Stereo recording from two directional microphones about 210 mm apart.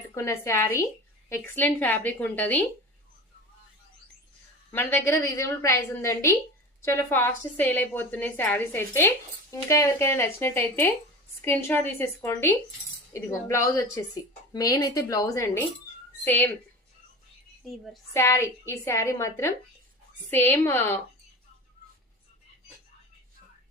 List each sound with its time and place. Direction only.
0.1 s a woman's voice: 15° left (ahead or behind)
4.7 s a woman's voice: 10° left (ahead or behind)
17.7 s speech: centre (ahead or behind)
18.1 s a woman's voice: 15° left (ahead or behind)
20.5 s a woman's voice: 10° left (ahead or behind)